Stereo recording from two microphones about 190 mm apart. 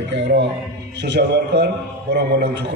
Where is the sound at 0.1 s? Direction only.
65° right (ahead or behind).